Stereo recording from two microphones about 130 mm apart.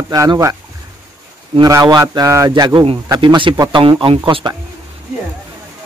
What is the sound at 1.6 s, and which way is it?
A man's voice, 25° right (ahead or behind).